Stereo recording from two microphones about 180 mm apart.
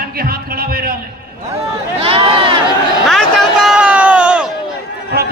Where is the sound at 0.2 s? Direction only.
55° right (ahead or behind).